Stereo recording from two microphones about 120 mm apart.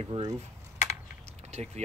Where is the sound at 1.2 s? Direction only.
70° right (ahead or behind).